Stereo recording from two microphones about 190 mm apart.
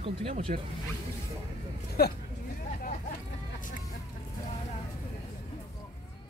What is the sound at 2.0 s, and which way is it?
Speech, 55° left (ahead or behind).